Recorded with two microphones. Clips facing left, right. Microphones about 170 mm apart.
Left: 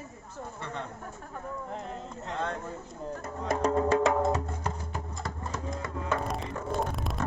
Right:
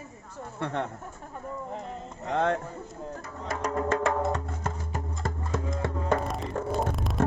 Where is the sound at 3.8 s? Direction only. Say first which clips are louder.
Even; 15° left (ahead or behind).